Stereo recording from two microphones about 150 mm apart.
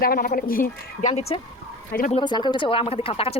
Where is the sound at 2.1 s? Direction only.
30° left (ahead or behind).